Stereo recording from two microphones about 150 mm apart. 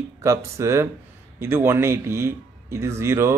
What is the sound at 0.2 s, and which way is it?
Speech, 20° right (ahead or behind).